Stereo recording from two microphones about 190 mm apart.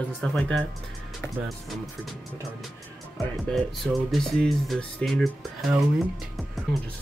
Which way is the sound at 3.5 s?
Centre (ahead or behind).